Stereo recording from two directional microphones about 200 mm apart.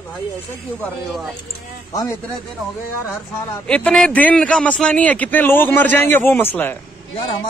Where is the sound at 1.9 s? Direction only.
15° left (ahead or behind).